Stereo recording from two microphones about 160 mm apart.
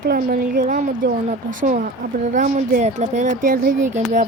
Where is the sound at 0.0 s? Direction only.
75° right (ahead or behind).